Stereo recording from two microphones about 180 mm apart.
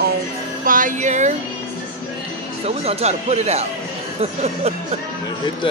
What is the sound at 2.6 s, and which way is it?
Speech, 35° right (ahead or behind).